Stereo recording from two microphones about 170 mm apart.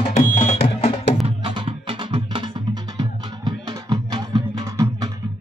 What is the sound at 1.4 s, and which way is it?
Music, 30° right (ahead or behind).